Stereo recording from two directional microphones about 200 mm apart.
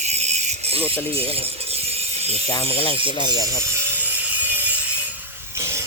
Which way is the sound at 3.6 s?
10° right (ahead or behind).